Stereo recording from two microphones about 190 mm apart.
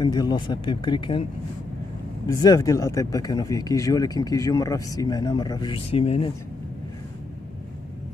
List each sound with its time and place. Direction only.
0.0 s speech: 20° left (ahead or behind)
2.2 s speech: 20° left (ahead or behind)